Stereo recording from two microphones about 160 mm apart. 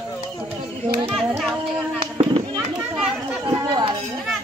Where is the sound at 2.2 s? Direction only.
30° right (ahead or behind).